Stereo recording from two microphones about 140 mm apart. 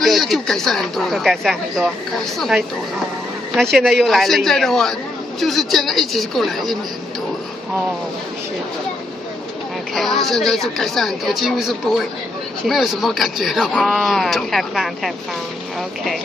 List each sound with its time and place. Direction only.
0.0 s speech: centre (ahead or behind)
9.9 s speech: centre (ahead or behind)